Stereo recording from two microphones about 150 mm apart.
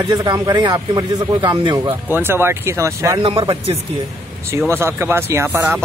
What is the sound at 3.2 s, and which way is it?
Speech, 40° right (ahead or behind).